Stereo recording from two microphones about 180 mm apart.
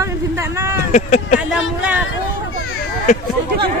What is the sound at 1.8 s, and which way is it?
Speech, 5° right (ahead or behind).